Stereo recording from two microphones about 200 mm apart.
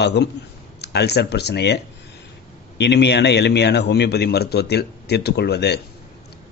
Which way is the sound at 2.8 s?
60° left (ahead or behind).